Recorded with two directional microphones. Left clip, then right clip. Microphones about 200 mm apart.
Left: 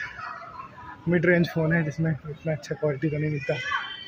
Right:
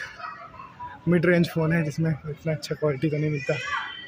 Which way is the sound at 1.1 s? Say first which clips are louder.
Even; 20° right (ahead or behind).